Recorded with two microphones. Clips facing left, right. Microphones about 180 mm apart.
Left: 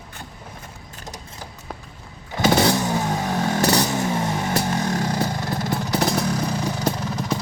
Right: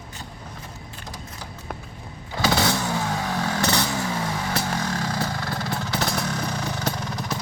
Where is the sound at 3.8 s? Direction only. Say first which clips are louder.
Left 4 dB; 20° left (ahead or behind).